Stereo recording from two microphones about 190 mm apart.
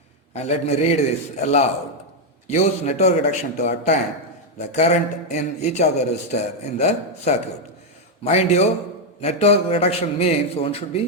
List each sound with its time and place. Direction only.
0.3 s a man's voice: 35° left (ahead or behind)